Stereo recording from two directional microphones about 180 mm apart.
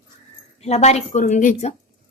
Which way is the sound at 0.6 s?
35° left (ahead or behind).